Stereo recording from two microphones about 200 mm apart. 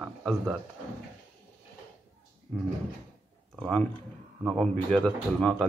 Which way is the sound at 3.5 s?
5° right (ahead or behind).